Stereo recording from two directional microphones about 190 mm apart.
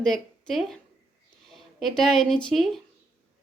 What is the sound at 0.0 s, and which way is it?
A woman's voice, 5° left (ahead or behind).